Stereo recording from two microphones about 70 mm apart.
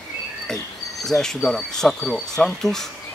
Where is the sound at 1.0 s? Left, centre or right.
Centre.